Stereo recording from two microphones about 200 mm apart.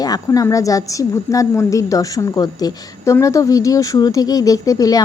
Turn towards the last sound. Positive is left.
turn(degrees=15)  # may be behind; listen again after turning